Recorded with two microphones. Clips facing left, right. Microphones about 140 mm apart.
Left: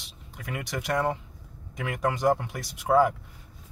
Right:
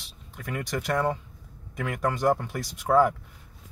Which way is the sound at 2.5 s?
15° left (ahead or behind).